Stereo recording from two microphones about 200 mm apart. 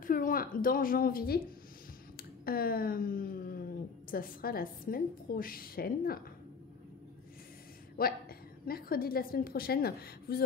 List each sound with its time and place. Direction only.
0.0 s a woman's voice: 45° left (ahead or behind)
8.0 s a woman's voice: 45° left (ahead or behind)